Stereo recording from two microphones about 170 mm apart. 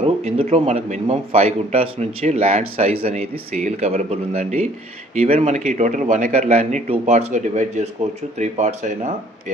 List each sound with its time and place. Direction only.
0.0 s a man's voice: 35° right (ahead or behind)